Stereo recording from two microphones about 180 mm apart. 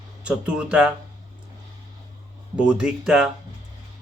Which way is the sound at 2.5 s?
5° right (ahead or behind).